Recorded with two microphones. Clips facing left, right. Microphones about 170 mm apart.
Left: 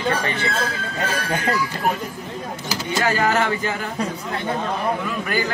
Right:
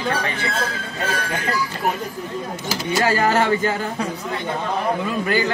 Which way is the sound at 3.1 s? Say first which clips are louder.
Right 2 dB; 30° right (ahead or behind).